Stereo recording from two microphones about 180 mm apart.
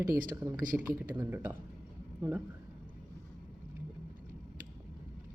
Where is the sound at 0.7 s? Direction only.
5° right (ahead or behind).